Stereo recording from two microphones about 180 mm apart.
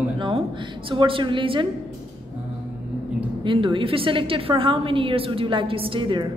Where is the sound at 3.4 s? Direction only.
30° right (ahead or behind).